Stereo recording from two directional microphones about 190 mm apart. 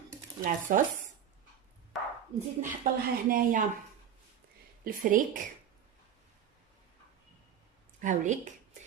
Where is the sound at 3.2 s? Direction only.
50° right (ahead or behind).